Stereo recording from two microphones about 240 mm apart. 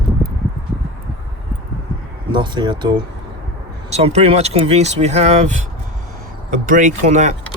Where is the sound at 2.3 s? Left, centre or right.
Centre.